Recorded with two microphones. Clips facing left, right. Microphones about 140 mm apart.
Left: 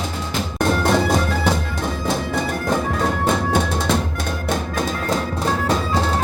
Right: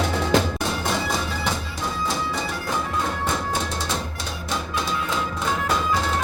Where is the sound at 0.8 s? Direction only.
55° left (ahead or behind).